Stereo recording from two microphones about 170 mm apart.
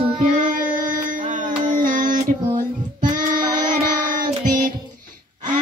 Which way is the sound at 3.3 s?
25° right (ahead or behind).